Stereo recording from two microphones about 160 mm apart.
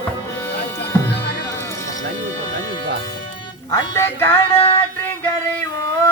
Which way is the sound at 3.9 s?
15° left (ahead or behind).